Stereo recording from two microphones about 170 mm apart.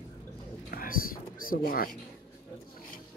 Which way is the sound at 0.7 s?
55° left (ahead or behind).